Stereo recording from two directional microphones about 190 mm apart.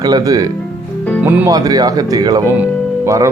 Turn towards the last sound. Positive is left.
turn(degrees=-15)  # may be behind; listen again after turning